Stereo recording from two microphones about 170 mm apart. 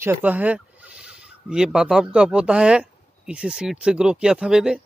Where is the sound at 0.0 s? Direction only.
10° right (ahead or behind).